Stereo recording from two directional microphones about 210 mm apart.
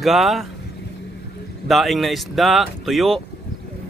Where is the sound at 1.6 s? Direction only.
Centre (ahead or behind).